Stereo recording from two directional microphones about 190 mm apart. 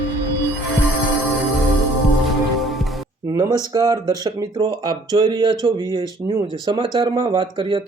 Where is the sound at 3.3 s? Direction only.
20° right (ahead or behind).